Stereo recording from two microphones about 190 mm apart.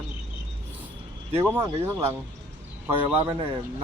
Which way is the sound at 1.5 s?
10° right (ahead or behind).